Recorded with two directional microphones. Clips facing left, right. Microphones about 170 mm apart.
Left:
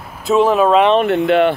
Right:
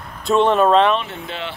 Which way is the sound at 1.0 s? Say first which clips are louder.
Left 16 dB; 65° left (ahead or behind).